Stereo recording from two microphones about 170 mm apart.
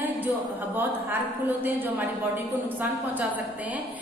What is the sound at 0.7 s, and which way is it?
A woman's voice, 10° right (ahead or behind).